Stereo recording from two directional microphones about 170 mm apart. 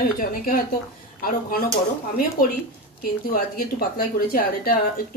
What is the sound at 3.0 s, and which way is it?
A woman's voice, 60° left (ahead or behind).